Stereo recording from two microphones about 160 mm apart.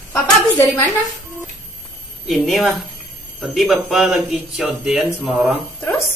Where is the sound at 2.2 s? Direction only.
Centre (ahead or behind).